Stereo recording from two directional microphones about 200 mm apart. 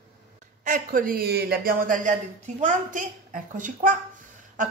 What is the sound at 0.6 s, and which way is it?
A child's voice, 45° right (ahead or behind).